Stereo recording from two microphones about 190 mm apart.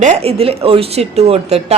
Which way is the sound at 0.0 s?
35° right (ahead or behind).